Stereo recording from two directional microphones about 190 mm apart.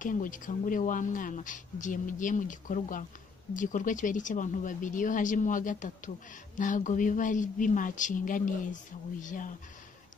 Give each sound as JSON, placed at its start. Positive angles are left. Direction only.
{"t": 0.0, "sound": "speech", "side_deg": 45}